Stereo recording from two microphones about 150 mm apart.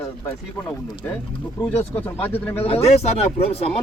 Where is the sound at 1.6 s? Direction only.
10° left (ahead or behind).